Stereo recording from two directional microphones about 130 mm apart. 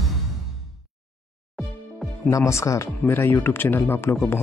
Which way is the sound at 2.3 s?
25° left (ahead or behind).